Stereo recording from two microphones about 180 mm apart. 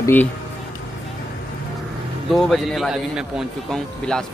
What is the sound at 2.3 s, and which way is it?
Speech, centre (ahead or behind).